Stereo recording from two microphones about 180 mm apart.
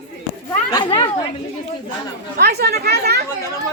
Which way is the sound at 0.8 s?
25° left (ahead or behind).